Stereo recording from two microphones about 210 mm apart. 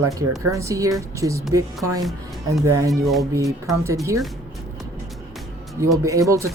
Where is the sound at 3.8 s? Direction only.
15° right (ahead or behind).